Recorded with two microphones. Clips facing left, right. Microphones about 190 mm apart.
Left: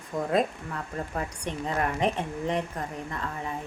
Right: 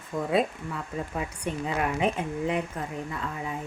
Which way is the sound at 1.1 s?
5° right (ahead or behind).